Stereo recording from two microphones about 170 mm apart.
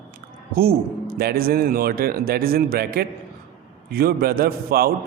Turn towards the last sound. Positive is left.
turn(degrees=-65)  # may be behind; listen again after turning